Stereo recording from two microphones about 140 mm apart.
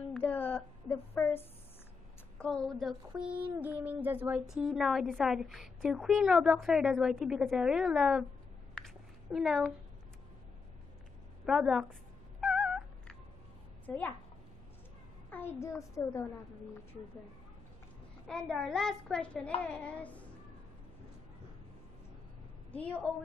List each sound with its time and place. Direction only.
0.1 s a woman's voice: 10° left (ahead or behind)
2.3 s a woman's voice: 5° left (ahead or behind)
3.3 s a sound: 10° right (ahead or behind)
4.5 s a woman's voice: centre (ahead or behind)
8.7 s cat: centre (ahead or behind)
11.4 s cat: 5° right (ahead or behind)
13.8 s a woman's voice: 10° left (ahead or behind)
15.2 s a child's voice: 15° left (ahead or behind)
18.2 s a woman's voice: centre (ahead or behind)
19.6 s child singing: 10° left (ahead or behind)
22.7 s a woman's voice: 10° left (ahead or behind)